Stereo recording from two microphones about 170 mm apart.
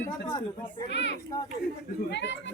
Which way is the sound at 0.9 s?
90° left.